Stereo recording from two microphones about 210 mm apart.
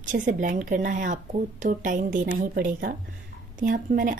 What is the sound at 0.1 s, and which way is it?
A woman's voice, 40° right (ahead or behind).